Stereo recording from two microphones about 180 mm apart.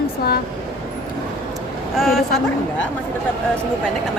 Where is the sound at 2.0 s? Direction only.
Centre (ahead or behind).